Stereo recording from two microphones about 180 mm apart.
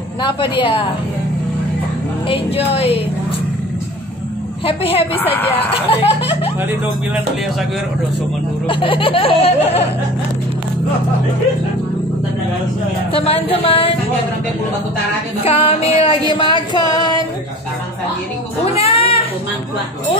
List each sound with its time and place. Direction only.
0.2 s a sound: 25° left (ahead or behind)
2.2 s speech: 30° left (ahead or behind)
4.6 s speech: 30° left (ahead or behind)
5.2 s speech: 10° left (ahead or behind)
5.7 s speech: 30° left (ahead or behind)
8.6 s speech: 30° left (ahead or behind)
13.1 s speech: 30° left (ahead or behind)
15.4 s a sound: 30° left (ahead or behind)
18.8 s a sound: 30° left (ahead or behind)